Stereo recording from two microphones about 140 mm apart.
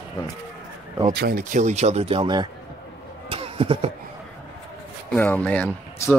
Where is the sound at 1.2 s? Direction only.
80° right; by 2.4 s 35° right (ahead or behind).